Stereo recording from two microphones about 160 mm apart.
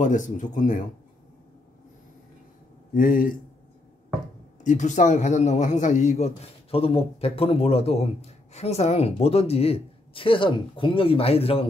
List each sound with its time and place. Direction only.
0.0 s speech: 50° left (ahead or behind)
2.9 s a man's voice: 60° left (ahead or behind)
4.6 s a man's voice: 50° left (ahead or behind)